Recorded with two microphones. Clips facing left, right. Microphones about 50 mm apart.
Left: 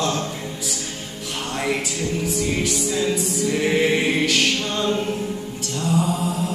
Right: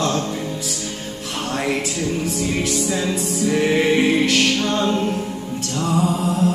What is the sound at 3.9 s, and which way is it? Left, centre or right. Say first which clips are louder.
Music: right 3 dB; right.